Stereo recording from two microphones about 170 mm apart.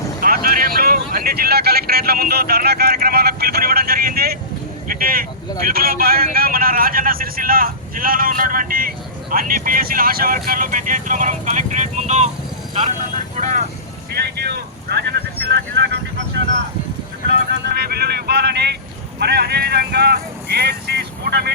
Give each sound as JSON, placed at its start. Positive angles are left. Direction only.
{"t": 0.2, "sound": "speech", "side_deg": -55}
{"t": 13.3, "sound": "vehicle", "side_deg": -45}
{"t": 14.1, "sound": "vehicle", "side_deg": -70}
{"t": 17.7, "sound": "speech", "side_deg": -65}